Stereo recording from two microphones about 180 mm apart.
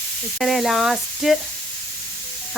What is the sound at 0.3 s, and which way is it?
Speech, centre (ahead or behind).